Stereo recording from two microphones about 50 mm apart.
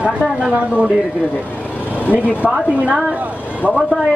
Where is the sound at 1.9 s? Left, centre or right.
Left.